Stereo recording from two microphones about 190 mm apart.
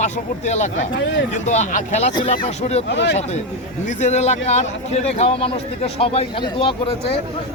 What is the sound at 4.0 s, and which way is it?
A man's voice, 35° left (ahead or behind).